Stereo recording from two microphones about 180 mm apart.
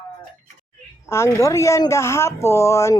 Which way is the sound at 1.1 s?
15° left (ahead or behind).